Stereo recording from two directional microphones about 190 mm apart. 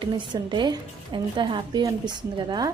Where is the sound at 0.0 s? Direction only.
25° right (ahead or behind).